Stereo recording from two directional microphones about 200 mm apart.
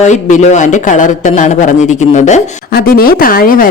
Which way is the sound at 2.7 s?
50° left (ahead or behind).